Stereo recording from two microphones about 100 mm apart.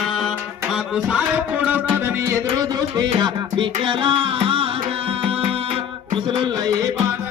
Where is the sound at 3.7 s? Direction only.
60° right (ahead or behind); by 6.9 s 40° right (ahead or behind).